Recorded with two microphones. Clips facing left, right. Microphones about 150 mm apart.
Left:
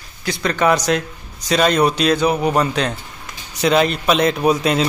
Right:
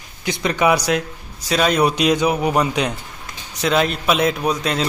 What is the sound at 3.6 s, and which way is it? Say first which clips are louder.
A man's voice: left 3 dB; centre (ahead or behind).